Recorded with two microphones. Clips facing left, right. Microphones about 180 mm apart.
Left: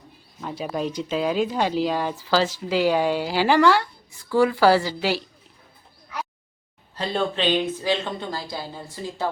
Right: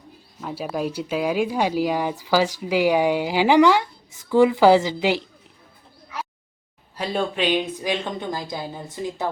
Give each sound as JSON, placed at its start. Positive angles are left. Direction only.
{"t": 0.4, "sound": "a woman's voice", "side_deg": -5}
{"t": 6.9, "sound": "speech", "side_deg": -10}